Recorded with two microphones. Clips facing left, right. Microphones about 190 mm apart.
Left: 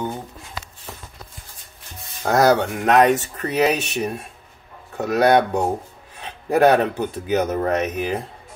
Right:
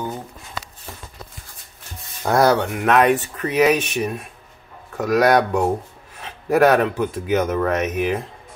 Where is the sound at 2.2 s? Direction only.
45° left (ahead or behind).